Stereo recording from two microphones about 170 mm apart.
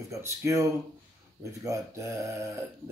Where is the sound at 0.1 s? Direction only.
20° right (ahead or behind).